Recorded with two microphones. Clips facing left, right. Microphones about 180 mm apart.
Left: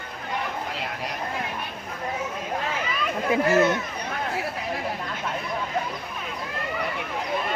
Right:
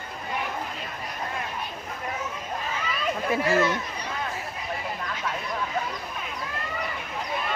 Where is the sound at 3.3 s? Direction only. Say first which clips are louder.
Left 4 dB; 20° left (ahead or behind).